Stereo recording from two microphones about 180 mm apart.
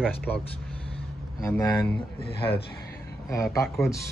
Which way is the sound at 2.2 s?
30° left (ahead or behind).